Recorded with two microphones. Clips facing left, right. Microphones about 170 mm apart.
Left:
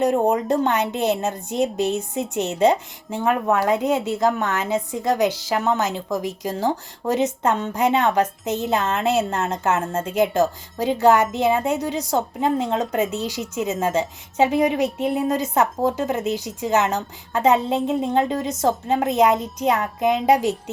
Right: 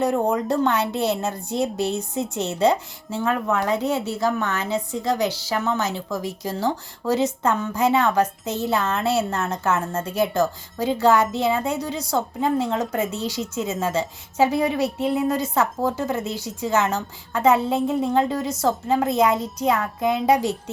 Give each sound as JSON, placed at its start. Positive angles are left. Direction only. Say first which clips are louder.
{"t": 0.0, "sound": "a woman's voice", "louder": "left 2 dB", "side_deg": 20}